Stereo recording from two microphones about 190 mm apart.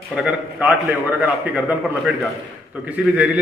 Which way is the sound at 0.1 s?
5° right (ahead or behind).